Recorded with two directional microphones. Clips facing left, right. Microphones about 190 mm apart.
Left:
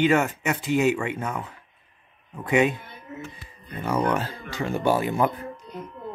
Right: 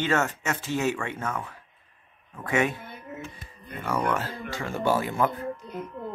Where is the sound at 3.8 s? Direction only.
20° left (ahead or behind).